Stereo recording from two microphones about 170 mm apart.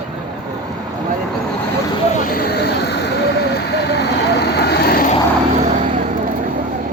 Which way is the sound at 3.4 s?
85° left.